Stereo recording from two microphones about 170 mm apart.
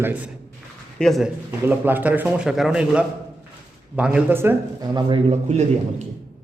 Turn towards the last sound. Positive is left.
turn(degrees=-40)  # may be behind; listen again after turning